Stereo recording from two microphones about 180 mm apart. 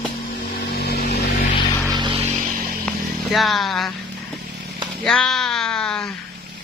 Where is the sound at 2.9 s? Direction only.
Centre (ahead or behind).